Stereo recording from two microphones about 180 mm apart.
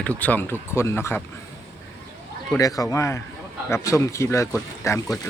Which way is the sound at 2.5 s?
20° left (ahead or behind).